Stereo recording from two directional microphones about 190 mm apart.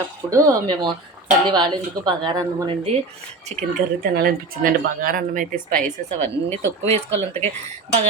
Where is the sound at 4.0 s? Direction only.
50° right (ahead or behind).